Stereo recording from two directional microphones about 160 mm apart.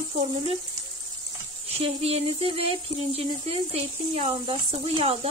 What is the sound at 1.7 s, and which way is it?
Speech, 40° right (ahead or behind).